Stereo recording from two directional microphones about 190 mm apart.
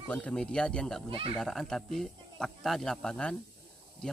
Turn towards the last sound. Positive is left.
turn(degrees=5)  # may be behind; listen again after turning